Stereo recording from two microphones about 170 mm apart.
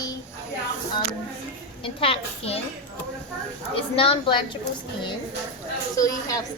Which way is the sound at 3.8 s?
35° left (ahead or behind).